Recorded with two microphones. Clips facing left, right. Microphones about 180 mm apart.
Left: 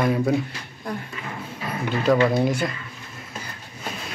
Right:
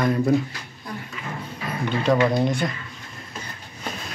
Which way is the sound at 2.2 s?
5° left (ahead or behind).